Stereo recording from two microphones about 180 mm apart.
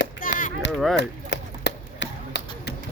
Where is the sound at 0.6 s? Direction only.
80° left.